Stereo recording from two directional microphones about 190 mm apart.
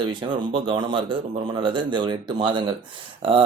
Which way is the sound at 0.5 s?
25° right (ahead or behind).